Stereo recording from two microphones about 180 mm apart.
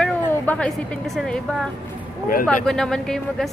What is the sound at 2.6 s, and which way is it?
Speech, 5° left (ahead or behind).